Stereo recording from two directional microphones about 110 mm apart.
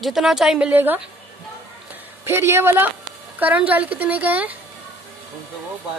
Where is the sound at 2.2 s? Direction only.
25° right (ahead or behind).